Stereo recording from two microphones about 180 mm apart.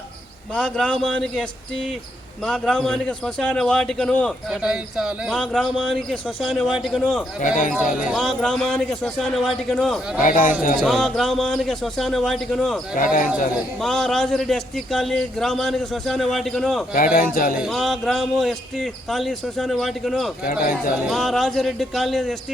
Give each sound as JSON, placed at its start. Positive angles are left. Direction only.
{"t": 0.5, "sound": "a man's voice", "side_deg": 5}
{"t": 7.4, "sound": "speech", "side_deg": 45}
{"t": 8.0, "sound": "a man's voice", "side_deg": 0}
{"t": 10.2, "sound": "speech", "side_deg": 50}
{"t": 10.8, "sound": "a man's voice", "side_deg": 0}
{"t": 13.0, "sound": "speech", "side_deg": 50}
{"t": 13.7, "sound": "a man's voice", "side_deg": 0}
{"t": 17.2, "sound": "speech", "side_deg": 50}
{"t": 17.6, "sound": "a man's voice", "side_deg": 0}
{"t": 20.4, "sound": "speech", "side_deg": 50}
{"t": 20.9, "sound": "a man's voice", "side_deg": 0}